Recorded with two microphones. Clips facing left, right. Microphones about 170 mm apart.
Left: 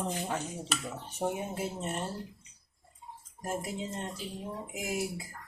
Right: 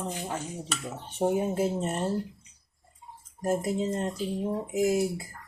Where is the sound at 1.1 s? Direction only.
30° right (ahead or behind).